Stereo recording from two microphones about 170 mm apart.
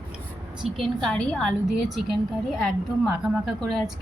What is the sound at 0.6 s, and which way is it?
Speech, 40° right (ahead or behind).